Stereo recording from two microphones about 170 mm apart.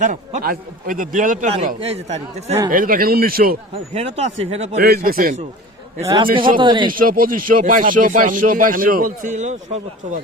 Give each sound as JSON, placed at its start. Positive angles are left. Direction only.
{"t": 0.0, "sound": "speech", "side_deg": -50}
{"t": 1.8, "sound": "speech", "side_deg": -40}
{"t": 2.6, "sound": "a man's voice", "side_deg": -55}
{"t": 3.9, "sound": "speech", "side_deg": -40}
{"t": 4.8, "sound": "a man's voice", "side_deg": -65}
{"t": 6.6, "sound": "a man's voice", "side_deg": -30}
{"t": 6.9, "sound": "speech", "side_deg": -55}